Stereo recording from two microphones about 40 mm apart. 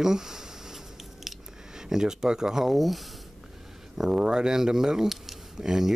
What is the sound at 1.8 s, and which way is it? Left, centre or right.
Speech, centre.